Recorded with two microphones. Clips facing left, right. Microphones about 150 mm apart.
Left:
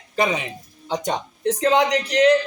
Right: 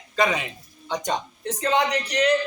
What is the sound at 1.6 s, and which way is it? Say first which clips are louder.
Speech: left 3 dB; 85° left.